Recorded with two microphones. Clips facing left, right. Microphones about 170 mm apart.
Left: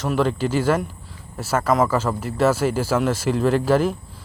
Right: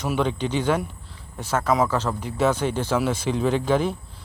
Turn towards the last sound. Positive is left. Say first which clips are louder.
# left 3 dB
turn(degrees=5)  # may be behind; listen again after turning